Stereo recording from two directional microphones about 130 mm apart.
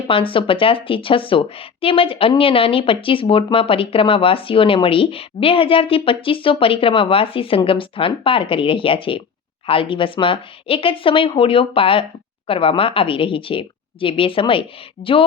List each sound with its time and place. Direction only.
0.1 s speech: 40° left (ahead or behind)